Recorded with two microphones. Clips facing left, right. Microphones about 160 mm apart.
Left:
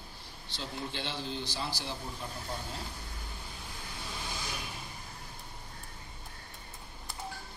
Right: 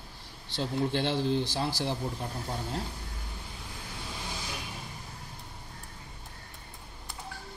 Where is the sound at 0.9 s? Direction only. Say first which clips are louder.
Right 10 dB; 55° right (ahead or behind).